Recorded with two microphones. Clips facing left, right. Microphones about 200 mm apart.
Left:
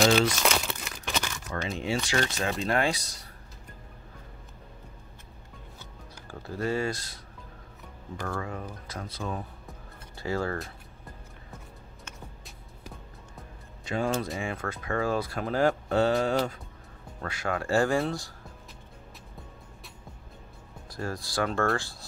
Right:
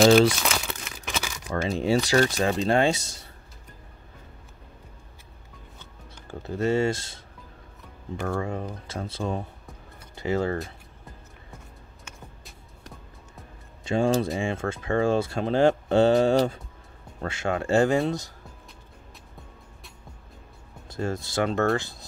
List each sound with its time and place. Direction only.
0.4 s crumpling: centre (ahead or behind)
1.5 s speech: 35° right (ahead or behind)
6.2 s speech: 25° right (ahead or behind)
8.2 s speech: 25° right (ahead or behind)
12.0 s music: centre (ahead or behind)
13.8 s speech: 30° right (ahead or behind)
20.9 s speech: 25° right (ahead or behind)